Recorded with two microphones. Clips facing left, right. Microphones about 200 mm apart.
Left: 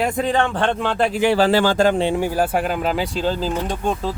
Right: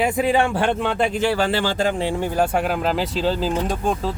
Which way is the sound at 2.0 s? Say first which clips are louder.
Left 3 dB; 20° left (ahead or behind).